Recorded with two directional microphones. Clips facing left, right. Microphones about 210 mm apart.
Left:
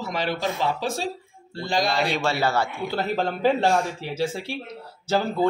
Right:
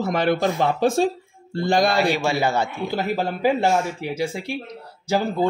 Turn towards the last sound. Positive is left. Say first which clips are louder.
# right 1 dB
turn(degrees=-10)  # may be behind; listen again after turning